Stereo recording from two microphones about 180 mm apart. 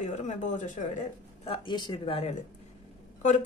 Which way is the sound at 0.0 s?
40° left (ahead or behind).